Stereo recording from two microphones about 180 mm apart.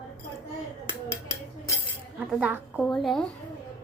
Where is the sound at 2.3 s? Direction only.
10° right (ahead or behind).